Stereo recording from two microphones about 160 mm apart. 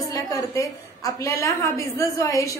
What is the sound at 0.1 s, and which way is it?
A woman's voice, 20° left (ahead or behind).